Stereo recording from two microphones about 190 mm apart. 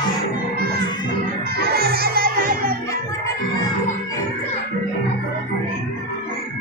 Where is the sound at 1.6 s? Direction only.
55° right (ahead or behind).